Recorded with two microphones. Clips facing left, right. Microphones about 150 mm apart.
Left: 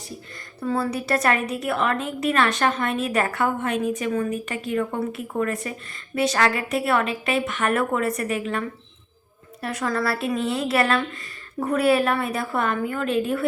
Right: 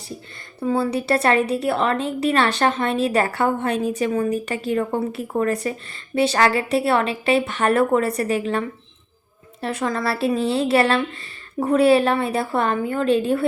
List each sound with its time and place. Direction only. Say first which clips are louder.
0.6 s a woman's voice: right 4 dB; 25° right (ahead or behind)